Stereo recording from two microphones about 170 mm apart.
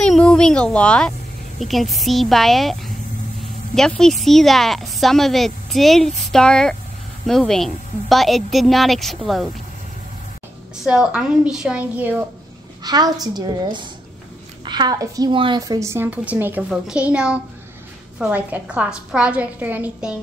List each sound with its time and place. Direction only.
0.0 s a sound: 5° left (ahead or behind)
1.6 s a woman's voice: centre (ahead or behind)
10.8 s a woman's voice: 5° right (ahead or behind)
12.8 s a woman's voice: 25° right (ahead or behind); by 20.2 s 5° right (ahead or behind)